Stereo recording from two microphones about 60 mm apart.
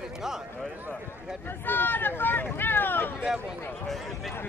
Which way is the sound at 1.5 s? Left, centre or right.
Left.